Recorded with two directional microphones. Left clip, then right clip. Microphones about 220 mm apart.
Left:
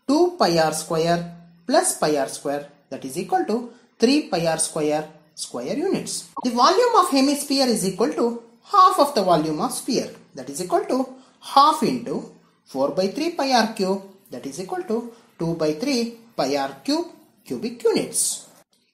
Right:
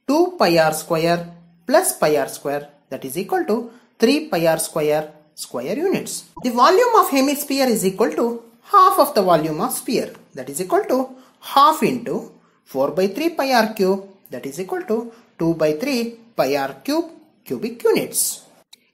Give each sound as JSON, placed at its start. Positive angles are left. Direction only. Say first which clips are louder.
{"t": 0.0, "sound": "speech", "louder": "right 2 dB", "side_deg": -20}